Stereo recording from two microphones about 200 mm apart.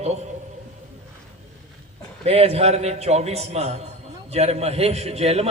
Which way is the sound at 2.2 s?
30° right (ahead or behind).